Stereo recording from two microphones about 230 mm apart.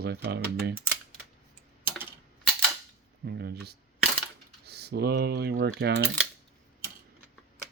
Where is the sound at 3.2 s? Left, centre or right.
Right.